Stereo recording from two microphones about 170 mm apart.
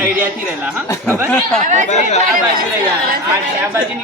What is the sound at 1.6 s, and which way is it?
Speech, 45° right (ahead or behind).